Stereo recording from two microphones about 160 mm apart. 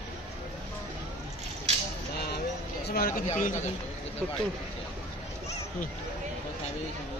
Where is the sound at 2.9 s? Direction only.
65° left (ahead or behind).